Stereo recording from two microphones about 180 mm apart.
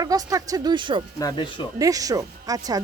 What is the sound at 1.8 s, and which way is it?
Speech, 20° right (ahead or behind).